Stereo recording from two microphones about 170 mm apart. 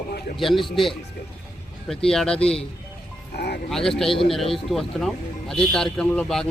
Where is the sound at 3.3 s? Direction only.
70° left (ahead or behind).